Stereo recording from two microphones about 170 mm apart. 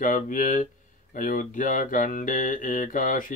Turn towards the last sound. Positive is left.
turn(degrees=50)  # may be behind; listen again after turning